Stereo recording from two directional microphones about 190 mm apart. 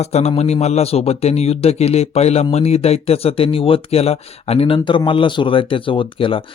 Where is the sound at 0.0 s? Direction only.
35° left (ahead or behind).